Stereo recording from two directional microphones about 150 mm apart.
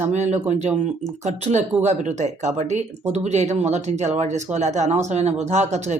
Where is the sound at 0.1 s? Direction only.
50° right (ahead or behind).